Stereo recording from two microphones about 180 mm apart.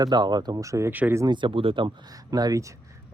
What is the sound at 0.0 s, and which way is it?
Speech, 25° right (ahead or behind).